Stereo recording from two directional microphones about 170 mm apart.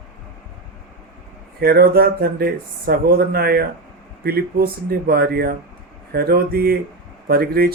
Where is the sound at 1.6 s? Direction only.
65° right (ahead or behind).